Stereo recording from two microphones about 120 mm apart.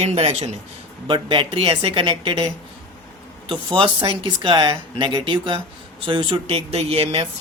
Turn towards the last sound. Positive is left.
turn(degrees=-55)  # may be behind; listen again after turning